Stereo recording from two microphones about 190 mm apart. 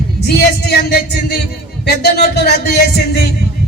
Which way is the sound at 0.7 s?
60° left (ahead or behind).